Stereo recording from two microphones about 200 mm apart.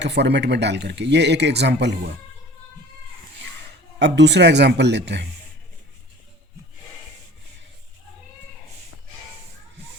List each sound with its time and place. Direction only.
0.0 s speech: 60° right (ahead or behind)
3.9 s speech: 60° right (ahead or behind)